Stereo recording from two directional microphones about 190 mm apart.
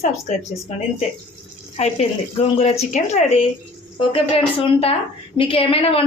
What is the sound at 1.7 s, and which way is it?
A woman's voice, 35° left (ahead or behind).